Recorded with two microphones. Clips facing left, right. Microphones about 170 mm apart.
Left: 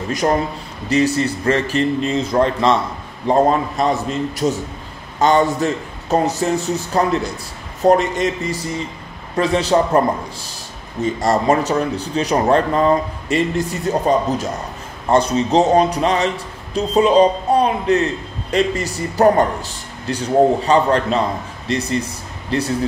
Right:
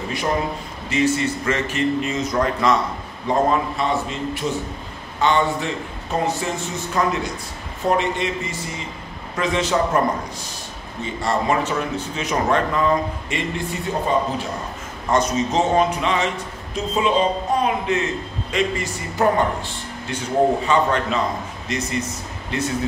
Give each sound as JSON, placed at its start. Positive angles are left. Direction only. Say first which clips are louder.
{"t": 0.8, "sound": "speech", "louder": "left 3 dB", "side_deg": 40}
{"t": 3.3, "sound": "speech", "louder": "left 4 dB", "side_deg": 40}